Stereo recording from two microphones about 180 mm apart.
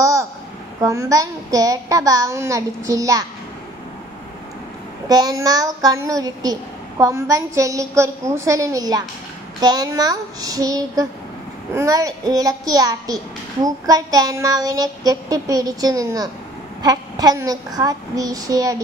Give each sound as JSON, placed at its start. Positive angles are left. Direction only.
{"t": 0.0, "sound": "a sound", "side_deg": -15}
{"t": 0.7, "sound": "a child's voice", "side_deg": -15}
{"t": 5.0, "sound": "a child's voice", "side_deg": -20}